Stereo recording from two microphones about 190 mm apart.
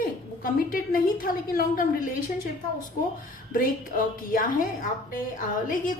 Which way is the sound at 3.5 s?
45° left (ahead or behind).